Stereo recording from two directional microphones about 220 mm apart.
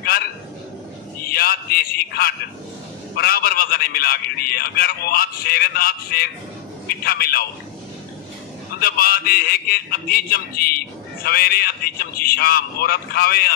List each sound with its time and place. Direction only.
1.2 s a sound: 45° left (ahead or behind)
3.2 s a man's voice: 45° left (ahead or behind)
8.7 s a man's voice: 45° left (ahead or behind)